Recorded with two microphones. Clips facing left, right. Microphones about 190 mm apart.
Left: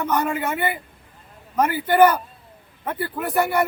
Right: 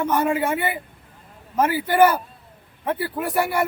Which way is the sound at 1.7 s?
10° right (ahead or behind).